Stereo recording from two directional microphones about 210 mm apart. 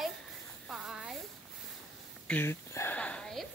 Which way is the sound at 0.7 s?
Centre (ahead or behind).